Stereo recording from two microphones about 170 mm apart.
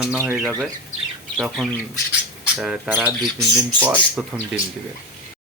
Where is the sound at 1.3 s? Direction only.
Centre (ahead or behind).